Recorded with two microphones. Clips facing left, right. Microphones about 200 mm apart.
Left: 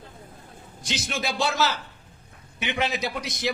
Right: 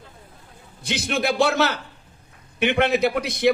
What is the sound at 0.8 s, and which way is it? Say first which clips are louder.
A man's voice: right 6 dB; 60° right (ahead or behind).